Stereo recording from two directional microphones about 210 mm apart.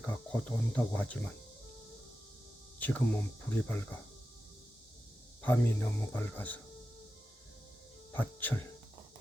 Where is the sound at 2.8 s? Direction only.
10° left (ahead or behind).